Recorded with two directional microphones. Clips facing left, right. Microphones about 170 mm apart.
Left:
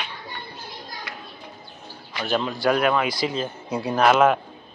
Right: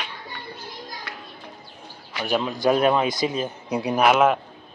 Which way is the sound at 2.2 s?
10° right (ahead or behind).